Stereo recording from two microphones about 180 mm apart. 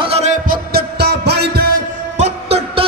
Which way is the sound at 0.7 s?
65° right (ahead or behind).